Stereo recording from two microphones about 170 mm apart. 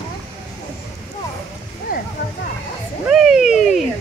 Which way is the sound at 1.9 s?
55° left (ahead or behind).